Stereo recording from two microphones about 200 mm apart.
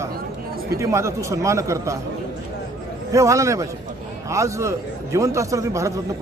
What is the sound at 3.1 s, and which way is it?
A man's voice, 15° right (ahead or behind).